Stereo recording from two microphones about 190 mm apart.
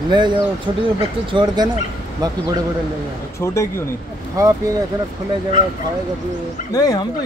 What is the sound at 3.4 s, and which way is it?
Speech, 15° left (ahead or behind).